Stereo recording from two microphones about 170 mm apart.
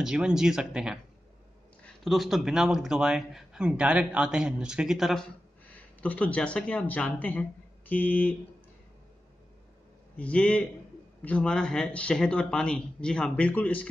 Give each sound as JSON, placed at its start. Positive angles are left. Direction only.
{"t": 0.0, "sound": "speech", "side_deg": -5}
{"t": 10.1, "sound": "a man's voice", "side_deg": 10}